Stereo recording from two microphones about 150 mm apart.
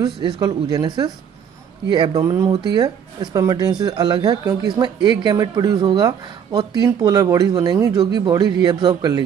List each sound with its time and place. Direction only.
0.0 s speech: 25° right (ahead or behind)
2.2 s speech: 15° right (ahead or behind)
2.5 s speech: 30° right (ahead or behind)